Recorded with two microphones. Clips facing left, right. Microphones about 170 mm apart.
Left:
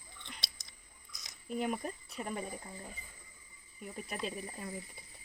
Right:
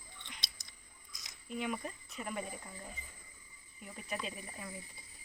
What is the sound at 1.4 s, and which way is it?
Speech, 45° left (ahead or behind).